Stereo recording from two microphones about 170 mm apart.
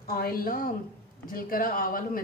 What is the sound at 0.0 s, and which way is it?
A woman's voice, 60° left (ahead or behind).